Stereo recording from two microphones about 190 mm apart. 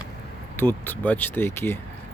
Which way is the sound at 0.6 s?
10° left (ahead or behind).